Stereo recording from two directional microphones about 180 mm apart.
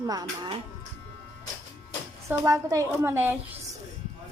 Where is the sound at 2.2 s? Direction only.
15° right (ahead or behind).